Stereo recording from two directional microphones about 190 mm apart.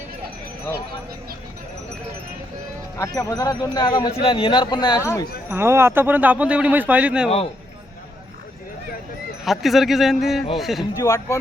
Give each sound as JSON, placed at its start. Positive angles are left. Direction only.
{"t": 3.0, "sound": "speech", "side_deg": 20}
{"t": 5.5, "sound": "speech", "side_deg": -10}
{"t": 9.4, "sound": "speech", "side_deg": 0}
{"t": 11.0, "sound": "speech", "side_deg": 20}